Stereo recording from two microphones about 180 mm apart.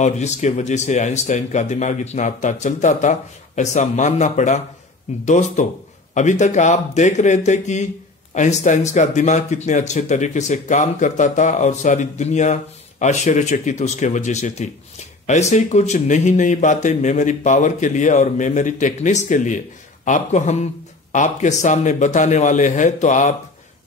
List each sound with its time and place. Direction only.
0.0 s speech: 40° left (ahead or behind)